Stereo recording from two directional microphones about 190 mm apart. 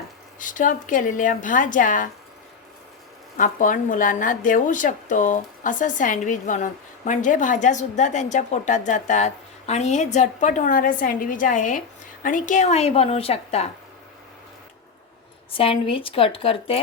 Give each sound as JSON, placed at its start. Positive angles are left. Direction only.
{"t": 0.3, "sound": "a woman's voice", "side_deg": 45}
{"t": 3.3, "sound": "speech", "side_deg": 45}
{"t": 15.5, "sound": "speech", "side_deg": 30}